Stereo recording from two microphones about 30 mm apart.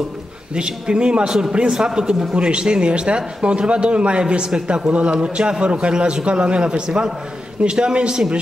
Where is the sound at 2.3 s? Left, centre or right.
Right.